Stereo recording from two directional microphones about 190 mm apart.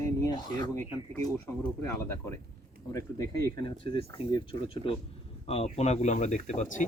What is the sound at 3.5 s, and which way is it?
Speech, 25° left (ahead or behind).